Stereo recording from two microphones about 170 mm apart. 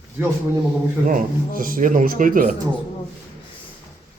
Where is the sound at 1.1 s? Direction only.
55° right (ahead or behind).